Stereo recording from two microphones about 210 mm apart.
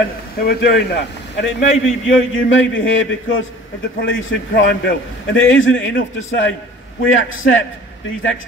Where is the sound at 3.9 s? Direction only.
65° left (ahead or behind).